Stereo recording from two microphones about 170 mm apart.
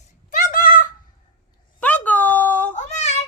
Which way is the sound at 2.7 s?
40° left (ahead or behind).